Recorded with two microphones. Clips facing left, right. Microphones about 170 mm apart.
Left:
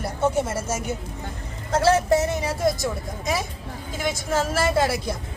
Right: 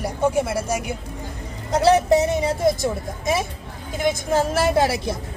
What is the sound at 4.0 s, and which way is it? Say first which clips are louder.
A woman's voice: right 4 dB; 20° right (ahead or behind).